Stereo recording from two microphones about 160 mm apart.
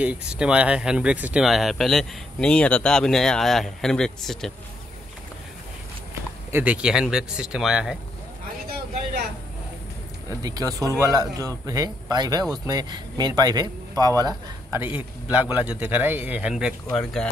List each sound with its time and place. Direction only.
0.0 s speech: 5° right (ahead or behind)
6.5 s speech: 10° right (ahead or behind)
10.4 s speech: 25° right (ahead or behind); by 17.3 s 5° left (ahead or behind)